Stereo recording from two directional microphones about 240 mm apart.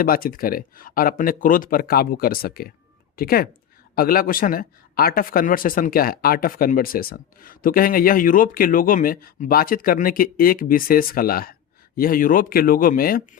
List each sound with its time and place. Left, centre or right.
0.0 s speech: left